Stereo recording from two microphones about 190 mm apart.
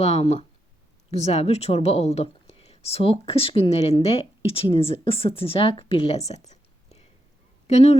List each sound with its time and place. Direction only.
0.0 s a woman's voice: 35° left (ahead or behind)